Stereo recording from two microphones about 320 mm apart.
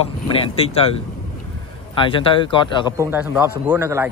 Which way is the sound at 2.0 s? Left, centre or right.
Centre.